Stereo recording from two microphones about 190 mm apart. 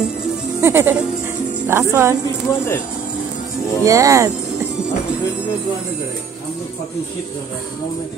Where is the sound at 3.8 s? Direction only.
15° right (ahead or behind).